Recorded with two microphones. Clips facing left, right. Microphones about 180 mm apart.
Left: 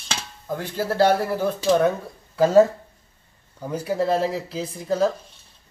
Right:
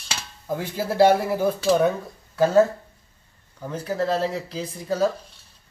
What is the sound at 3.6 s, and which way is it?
Speech, 5° left (ahead or behind).